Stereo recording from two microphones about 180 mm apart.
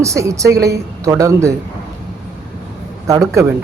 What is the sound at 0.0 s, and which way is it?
Speech, 15° right (ahead or behind).